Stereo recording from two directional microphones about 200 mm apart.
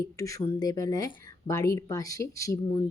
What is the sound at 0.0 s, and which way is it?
Speech, 15° left (ahead or behind).